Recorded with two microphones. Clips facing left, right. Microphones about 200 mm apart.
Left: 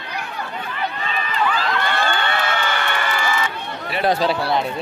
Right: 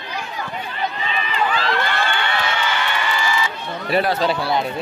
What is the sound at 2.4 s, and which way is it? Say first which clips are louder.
Crowd: even; 55° left (ahead or behind).